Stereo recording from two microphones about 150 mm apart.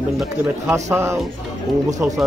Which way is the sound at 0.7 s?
20° right (ahead or behind).